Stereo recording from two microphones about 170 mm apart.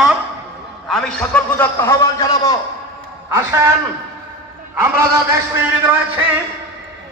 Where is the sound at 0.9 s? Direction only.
5° left (ahead or behind); by 2.6 s 20° left (ahead or behind).